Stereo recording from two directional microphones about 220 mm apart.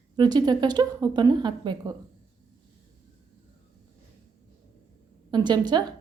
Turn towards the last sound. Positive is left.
turn(degrees=-20)  # may be behind; listen again after turning